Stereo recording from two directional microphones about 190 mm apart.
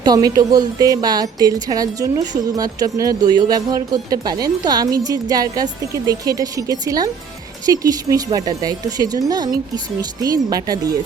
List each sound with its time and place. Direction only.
0.0 s speech: 20° right (ahead or behind)